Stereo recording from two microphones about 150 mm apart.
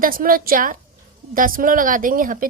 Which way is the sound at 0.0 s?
70° right (ahead or behind).